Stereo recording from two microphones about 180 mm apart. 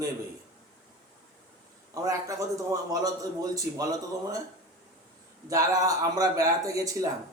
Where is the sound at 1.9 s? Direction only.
20° right (ahead or behind).